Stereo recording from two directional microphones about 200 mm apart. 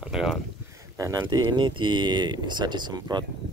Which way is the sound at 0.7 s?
15° right (ahead or behind).